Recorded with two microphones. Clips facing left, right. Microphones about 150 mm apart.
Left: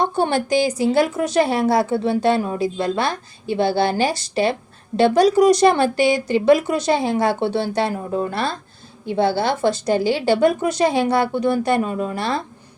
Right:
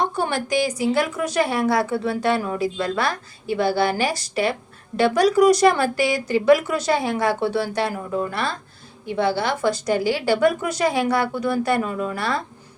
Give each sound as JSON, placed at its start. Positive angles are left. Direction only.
{"t": 0.0, "sound": "a woman's voice", "side_deg": 30}